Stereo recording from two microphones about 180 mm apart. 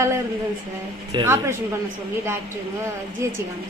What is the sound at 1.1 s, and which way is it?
Speech, 15° right (ahead or behind).